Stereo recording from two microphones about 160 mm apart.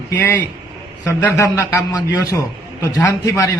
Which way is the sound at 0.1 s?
15° left (ahead or behind).